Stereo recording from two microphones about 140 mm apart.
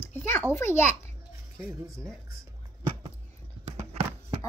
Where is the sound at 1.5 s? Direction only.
25° right (ahead or behind).